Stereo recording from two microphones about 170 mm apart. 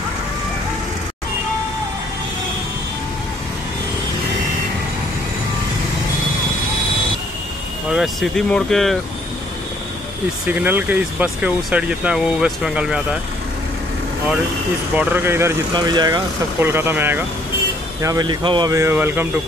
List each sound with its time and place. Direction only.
7.9 s speech: centre (ahead or behind)
10.4 s speech: 10° right (ahead or behind)
15.0 s speech: 15° right (ahead or behind)
15.7 s speech: 25° right (ahead or behind)
16.5 s speech: 15° right (ahead or behind)
18.0 s speech: 25° right (ahead or behind)